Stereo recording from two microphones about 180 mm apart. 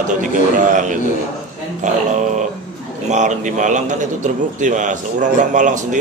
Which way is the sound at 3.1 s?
40° right (ahead or behind).